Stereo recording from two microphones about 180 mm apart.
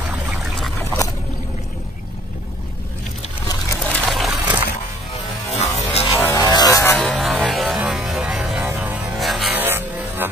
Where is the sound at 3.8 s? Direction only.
5° left (ahead or behind).